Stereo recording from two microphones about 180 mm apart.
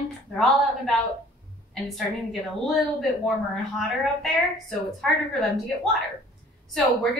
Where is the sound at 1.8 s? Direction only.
Centre (ahead or behind).